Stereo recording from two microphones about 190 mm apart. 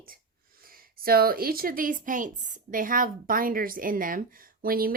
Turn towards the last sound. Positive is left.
turn(degrees=-50)  # may be behind; listen again after turning